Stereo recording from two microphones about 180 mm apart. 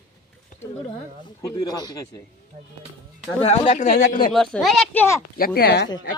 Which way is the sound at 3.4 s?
35° left (ahead or behind).